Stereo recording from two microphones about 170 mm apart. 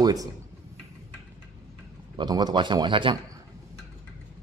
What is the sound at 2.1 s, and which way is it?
Speech, 25° right (ahead or behind).